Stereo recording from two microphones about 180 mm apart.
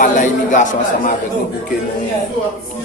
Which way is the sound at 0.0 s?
45° left (ahead or behind).